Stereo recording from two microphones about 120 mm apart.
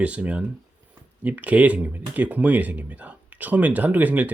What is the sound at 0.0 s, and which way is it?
Speech, 10° right (ahead or behind).